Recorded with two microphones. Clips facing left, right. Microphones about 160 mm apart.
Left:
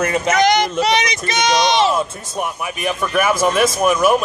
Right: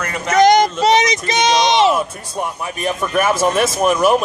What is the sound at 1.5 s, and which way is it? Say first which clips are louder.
Speech: right 2 dB; 25° right (ahead or behind).